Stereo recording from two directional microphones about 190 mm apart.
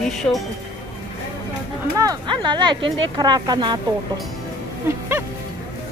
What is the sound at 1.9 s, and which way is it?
Speech, 20° right (ahead or behind).